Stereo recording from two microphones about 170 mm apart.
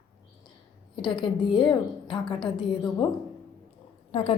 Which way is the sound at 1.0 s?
30° left (ahead or behind).